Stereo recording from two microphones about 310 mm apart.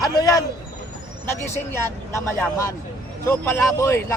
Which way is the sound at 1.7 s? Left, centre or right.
Centre.